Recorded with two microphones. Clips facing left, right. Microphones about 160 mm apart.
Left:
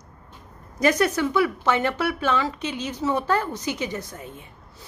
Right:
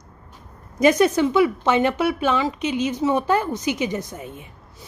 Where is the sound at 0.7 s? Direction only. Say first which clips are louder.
Right 4 dB; 20° right (ahead or behind).